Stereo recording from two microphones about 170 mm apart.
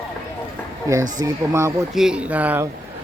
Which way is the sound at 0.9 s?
20° right (ahead or behind).